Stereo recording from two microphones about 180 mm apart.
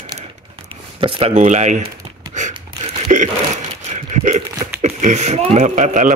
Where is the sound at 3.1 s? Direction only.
40° right (ahead or behind).